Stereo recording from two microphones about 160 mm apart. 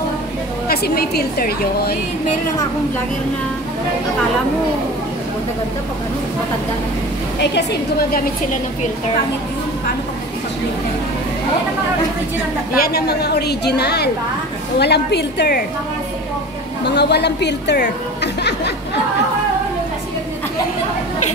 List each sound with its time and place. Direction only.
0.7 s a woman's voice: 80° left
12.7 s speech: 70° left (ahead or behind)
16.8 s speech: 90° left